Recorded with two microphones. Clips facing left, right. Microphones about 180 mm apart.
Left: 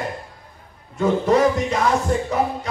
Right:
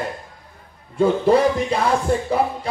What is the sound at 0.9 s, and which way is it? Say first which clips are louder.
Speech: right 2 dB; 30° right (ahead or behind).